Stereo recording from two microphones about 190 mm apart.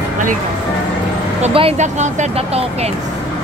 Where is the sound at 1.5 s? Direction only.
30° right (ahead or behind).